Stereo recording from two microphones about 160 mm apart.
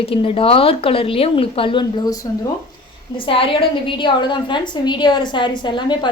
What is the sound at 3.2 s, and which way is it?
A woman's voice, 35° left (ahead or behind).